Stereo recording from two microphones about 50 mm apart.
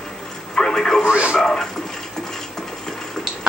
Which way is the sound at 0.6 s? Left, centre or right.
Centre.